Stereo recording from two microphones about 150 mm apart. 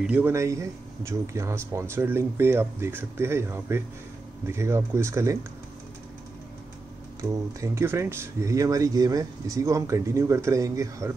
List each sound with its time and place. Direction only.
0.0 s speech: 10° right (ahead or behind)
7.2 s speech: 20° right (ahead or behind)